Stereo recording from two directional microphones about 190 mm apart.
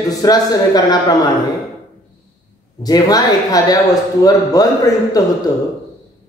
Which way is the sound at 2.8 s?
20° left (ahead or behind).